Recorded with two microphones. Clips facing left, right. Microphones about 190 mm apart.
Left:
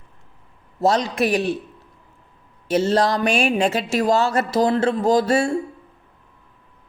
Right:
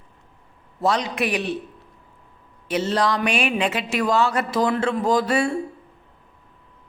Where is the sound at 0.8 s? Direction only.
45° left (ahead or behind).